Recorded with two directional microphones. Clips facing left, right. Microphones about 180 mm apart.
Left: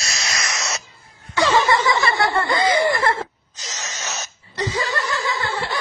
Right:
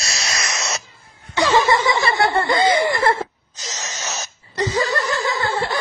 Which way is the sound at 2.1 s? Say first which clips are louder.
Right 2 dB; 20° right (ahead or behind).